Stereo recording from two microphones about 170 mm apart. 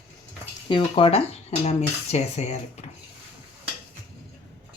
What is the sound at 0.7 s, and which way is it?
Speech, 30° left (ahead or behind).